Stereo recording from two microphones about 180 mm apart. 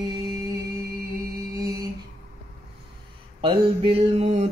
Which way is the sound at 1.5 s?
20° right (ahead or behind).